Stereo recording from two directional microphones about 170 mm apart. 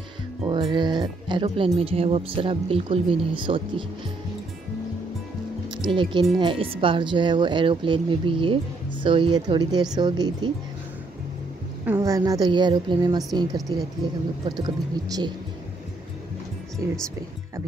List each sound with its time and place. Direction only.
0.5 s speech: 30° right (ahead or behind)
5.8 s speech: 30° right (ahead or behind)
12.0 s speech: 20° right (ahead or behind)
14.6 s speech: 25° right (ahead or behind)